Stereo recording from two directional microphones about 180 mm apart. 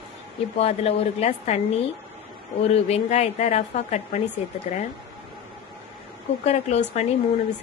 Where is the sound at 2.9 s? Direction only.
35° left (ahead or behind).